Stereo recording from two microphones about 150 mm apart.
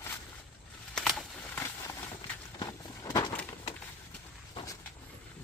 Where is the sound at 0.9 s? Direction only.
5° left (ahead or behind).